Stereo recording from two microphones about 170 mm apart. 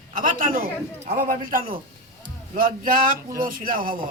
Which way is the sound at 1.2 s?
55° right (ahead or behind).